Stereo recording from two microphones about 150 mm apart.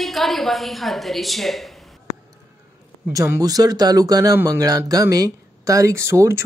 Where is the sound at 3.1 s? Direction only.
20° right (ahead or behind).